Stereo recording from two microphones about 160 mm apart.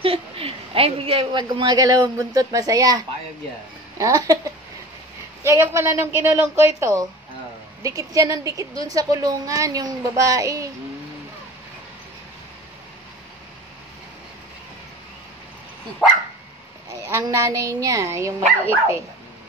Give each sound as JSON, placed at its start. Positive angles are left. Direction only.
{"t": 0.0, "sound": "a woman's voice", "side_deg": -35}
{"t": 5.4, "sound": "a woman's voice", "side_deg": -15}
{"t": 17.0, "sound": "a woman's voice", "side_deg": -20}